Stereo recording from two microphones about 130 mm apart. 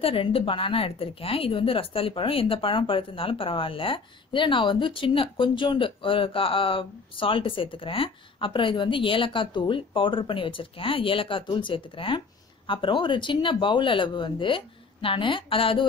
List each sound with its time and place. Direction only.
0.0 s a woman's voice: 45° left (ahead or behind)